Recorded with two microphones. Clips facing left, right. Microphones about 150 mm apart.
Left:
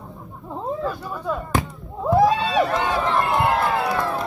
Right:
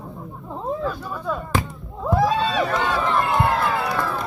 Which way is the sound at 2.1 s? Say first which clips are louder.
Left 3 dB; 25° left (ahead or behind).